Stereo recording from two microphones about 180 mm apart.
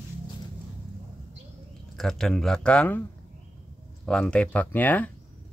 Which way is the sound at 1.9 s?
5° left (ahead or behind).